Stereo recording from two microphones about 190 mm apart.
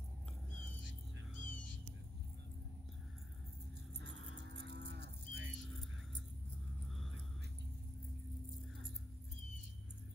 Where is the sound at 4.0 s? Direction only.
65° right (ahead or behind).